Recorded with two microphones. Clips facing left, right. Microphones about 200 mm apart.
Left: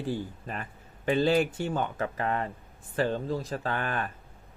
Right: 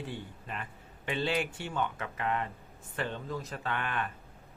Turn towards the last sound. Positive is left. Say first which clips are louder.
# left 3 dB
turn(degrees=40)  # may be behind; listen again after turning